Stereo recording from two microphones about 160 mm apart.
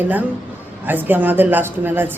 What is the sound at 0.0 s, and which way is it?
A woman's voice, 10° right (ahead or behind).